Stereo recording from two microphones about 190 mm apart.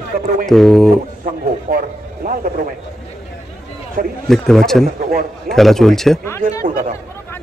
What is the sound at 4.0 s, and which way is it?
Speech, 50° right (ahead or behind).